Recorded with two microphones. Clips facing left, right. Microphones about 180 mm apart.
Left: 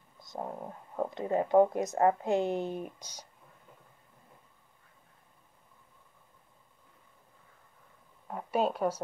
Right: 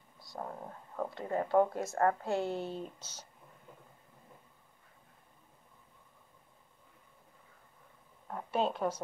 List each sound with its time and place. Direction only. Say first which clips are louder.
0.2 s speech: left 4 dB; 20° left (ahead or behind)
8.3 s speech: left 3 dB; 5° left (ahead or behind)